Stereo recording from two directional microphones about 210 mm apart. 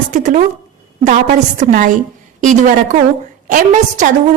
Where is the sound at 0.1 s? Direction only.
35° right (ahead or behind).